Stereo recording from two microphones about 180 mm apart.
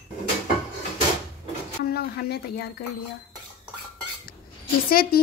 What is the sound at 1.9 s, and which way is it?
Speech, 60° left (ahead or behind).